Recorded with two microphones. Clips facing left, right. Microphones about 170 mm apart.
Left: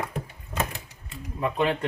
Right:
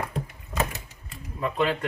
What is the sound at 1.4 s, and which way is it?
Speech, 20° left (ahead or behind).